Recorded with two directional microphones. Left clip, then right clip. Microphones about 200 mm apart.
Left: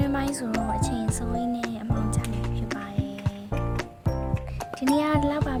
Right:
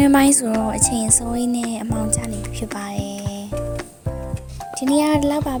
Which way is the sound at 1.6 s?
30° right (ahead or behind).